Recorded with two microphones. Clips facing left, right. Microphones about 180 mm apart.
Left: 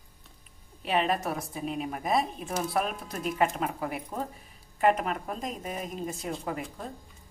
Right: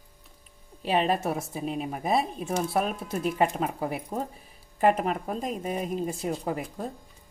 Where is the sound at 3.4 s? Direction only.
30° right (ahead or behind).